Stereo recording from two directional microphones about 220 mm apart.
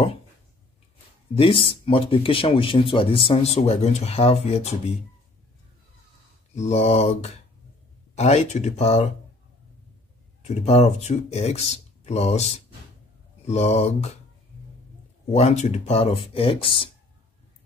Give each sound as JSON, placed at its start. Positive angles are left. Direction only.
{"t": 1.3, "sound": "speech", "side_deg": 25}
{"t": 6.5, "sound": "speech", "side_deg": 30}
{"t": 10.4, "sound": "speech", "side_deg": 30}
{"t": 15.3, "sound": "speech", "side_deg": 30}